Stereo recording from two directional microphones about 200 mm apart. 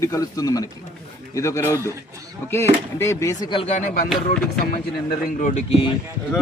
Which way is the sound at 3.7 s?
35° left (ahead or behind).